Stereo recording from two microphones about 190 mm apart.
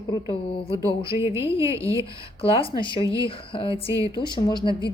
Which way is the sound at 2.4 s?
30° left (ahead or behind).